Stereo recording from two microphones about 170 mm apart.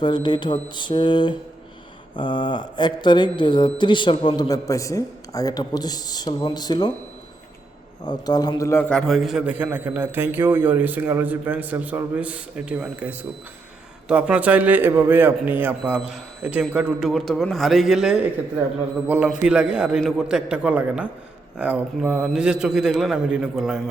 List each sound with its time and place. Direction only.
0.0 s speech: 25° left (ahead or behind)
8.0 s a man's voice: 25° left (ahead or behind); by 23.8 s 5° right (ahead or behind)